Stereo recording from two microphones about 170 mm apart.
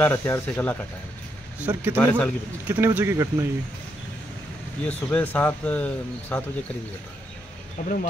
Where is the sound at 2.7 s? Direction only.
15° right (ahead or behind).